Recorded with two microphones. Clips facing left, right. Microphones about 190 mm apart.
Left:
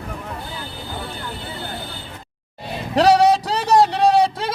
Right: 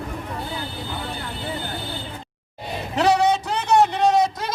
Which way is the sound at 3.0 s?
35° left (ahead or behind).